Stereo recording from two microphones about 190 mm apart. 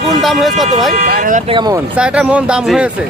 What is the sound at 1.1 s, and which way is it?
Speech, 45° right (ahead or behind).